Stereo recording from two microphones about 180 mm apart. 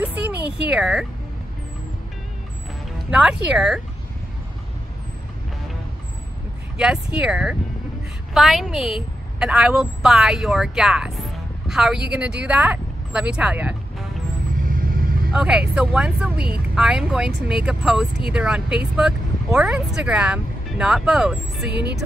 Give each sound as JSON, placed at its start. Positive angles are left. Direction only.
{"t": 0.0, "sound": "speech", "side_deg": -5}
{"t": 3.1, "sound": "speech", "side_deg": -5}
{"t": 6.8, "sound": "a woman's voice", "side_deg": -5}
{"t": 14.7, "sound": "vehicle", "side_deg": -55}
{"t": 15.3, "sound": "speech", "side_deg": -5}
{"t": 21.6, "sound": "speech", "side_deg": -70}